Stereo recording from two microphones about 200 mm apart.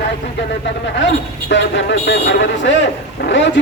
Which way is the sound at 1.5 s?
60° left (ahead or behind).